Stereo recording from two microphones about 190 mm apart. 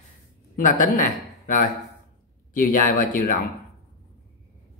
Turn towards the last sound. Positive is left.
turn(degrees=45)  # may be behind; listen again after turning